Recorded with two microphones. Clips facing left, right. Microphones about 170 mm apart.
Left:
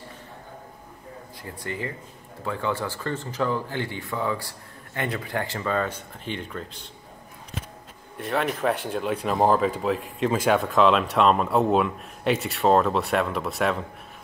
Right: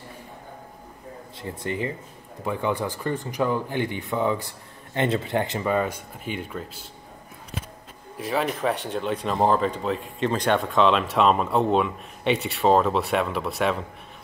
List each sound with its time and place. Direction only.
1.4 s speech: 25° right (ahead or behind); by 6.9 s 5° right (ahead or behind)
8.2 s speech: centre (ahead or behind)